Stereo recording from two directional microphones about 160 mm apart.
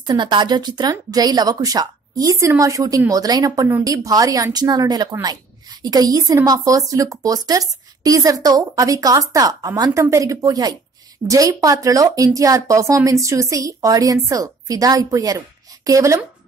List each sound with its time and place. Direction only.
0.0 s a woman's voice: 30° right (ahead or behind)